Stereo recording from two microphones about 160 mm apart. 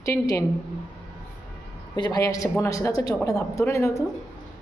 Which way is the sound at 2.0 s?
25° left (ahead or behind).